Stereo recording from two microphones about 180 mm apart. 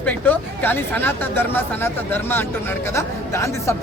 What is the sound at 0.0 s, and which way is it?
Speech, 10° left (ahead or behind).